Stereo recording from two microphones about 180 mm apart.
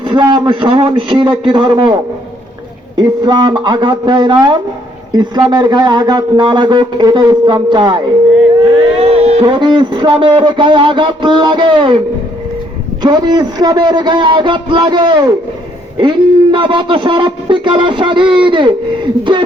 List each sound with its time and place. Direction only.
0.0 s a man's voice: 25° right (ahead or behind)
13.0 s a man's voice: 25° right (ahead or behind)